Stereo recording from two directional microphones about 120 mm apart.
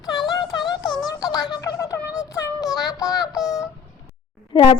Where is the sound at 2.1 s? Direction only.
30° left (ahead or behind).